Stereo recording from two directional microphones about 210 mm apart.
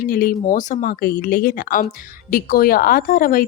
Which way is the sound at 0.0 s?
45° left (ahead or behind).